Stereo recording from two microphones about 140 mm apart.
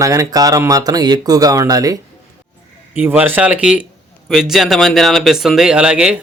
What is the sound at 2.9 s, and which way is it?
Speech, 15° right (ahead or behind).